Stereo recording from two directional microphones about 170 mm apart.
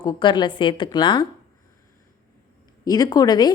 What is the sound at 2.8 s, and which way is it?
Speech, 25° left (ahead or behind).